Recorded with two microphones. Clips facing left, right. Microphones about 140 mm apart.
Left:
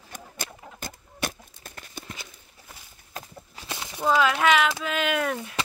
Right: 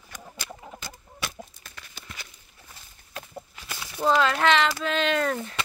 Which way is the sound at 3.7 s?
25° left (ahead or behind).